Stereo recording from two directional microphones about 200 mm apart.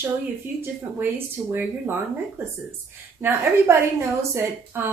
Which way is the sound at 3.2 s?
15° right (ahead or behind).